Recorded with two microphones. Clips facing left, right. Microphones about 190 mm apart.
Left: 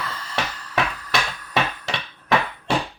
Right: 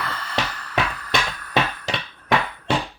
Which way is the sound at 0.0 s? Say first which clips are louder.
Right 1 dB; 60° right (ahead or behind).